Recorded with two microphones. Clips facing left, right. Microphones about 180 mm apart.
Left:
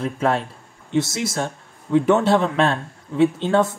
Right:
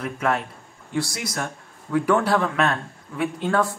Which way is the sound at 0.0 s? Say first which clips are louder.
Left 3 dB; 30° left (ahead or behind).